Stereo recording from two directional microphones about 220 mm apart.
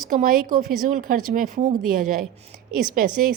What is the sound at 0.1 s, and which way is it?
A woman's voice, 40° right (ahead or behind).